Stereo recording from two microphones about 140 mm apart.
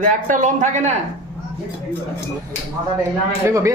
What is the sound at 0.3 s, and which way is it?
Speech, 65° right (ahead or behind).